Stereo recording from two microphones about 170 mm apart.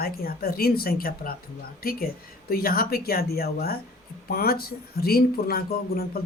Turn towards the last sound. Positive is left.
turn(degrees=65)  # may be behind; listen again after turning